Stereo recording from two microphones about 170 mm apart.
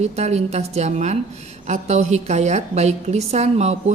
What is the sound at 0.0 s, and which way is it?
A woman's voice, 40° right (ahead or behind).